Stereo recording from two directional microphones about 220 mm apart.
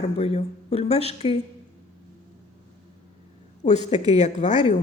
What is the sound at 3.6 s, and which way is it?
Speech, 35° left (ahead or behind).